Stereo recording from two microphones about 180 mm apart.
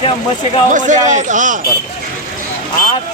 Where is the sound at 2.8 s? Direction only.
50° left (ahead or behind).